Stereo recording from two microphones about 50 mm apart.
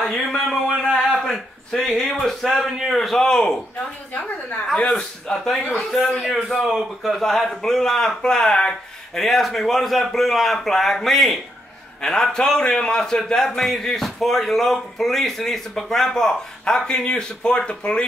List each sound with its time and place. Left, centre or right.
0.0 s a sound: centre
0.9 s speech: centre
4.8 s a man's voice: centre
5.6 s speech: left
5.9 s a man's voice: centre